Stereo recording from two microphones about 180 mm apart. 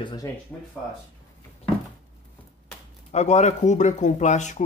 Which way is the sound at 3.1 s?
40° left (ahead or behind).